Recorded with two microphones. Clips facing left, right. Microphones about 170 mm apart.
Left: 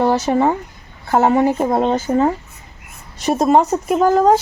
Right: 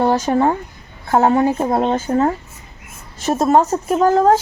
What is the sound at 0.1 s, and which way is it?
Speech, 5° left (ahead or behind).